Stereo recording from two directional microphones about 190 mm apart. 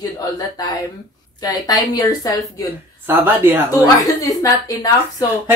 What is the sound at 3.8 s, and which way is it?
A woman's voice, 20° left (ahead or behind).